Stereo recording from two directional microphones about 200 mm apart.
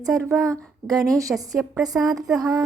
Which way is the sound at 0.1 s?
15° right (ahead or behind).